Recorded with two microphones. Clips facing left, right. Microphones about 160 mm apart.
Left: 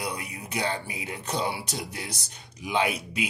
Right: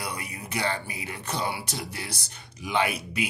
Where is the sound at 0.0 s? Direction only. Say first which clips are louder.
Left 1 dB; 20° left (ahead or behind).